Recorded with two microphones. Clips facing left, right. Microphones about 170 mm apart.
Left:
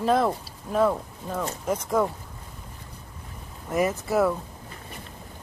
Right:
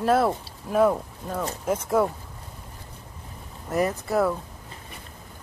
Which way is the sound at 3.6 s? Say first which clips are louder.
Even; centre (ahead or behind).